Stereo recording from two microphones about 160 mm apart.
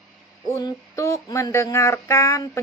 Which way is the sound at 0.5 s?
15° left (ahead or behind).